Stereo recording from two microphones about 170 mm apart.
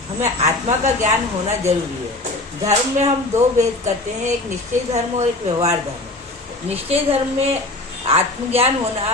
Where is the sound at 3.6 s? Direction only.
45° right (ahead or behind).